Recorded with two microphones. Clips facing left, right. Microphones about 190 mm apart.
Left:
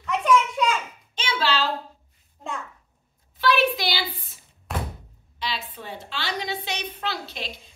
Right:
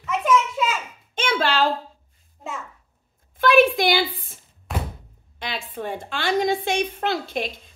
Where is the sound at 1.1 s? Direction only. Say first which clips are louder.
Right 3 dB; 50° right (ahead or behind).